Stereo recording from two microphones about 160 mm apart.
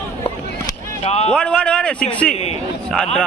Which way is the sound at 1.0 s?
40° left (ahead or behind).